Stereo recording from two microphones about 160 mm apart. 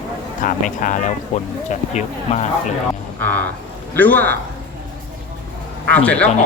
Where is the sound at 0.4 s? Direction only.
55° left (ahead or behind).